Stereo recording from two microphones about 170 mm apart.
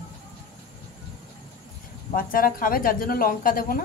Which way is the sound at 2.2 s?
55° left (ahead or behind).